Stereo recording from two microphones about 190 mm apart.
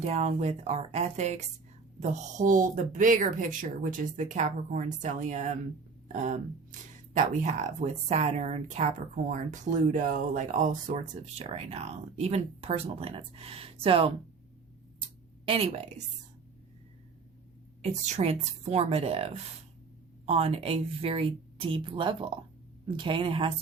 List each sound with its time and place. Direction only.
0.0 s speech: 35° right (ahead or behind)
15.4 s speech: 30° right (ahead or behind)
18.0 s speech: 35° right (ahead or behind)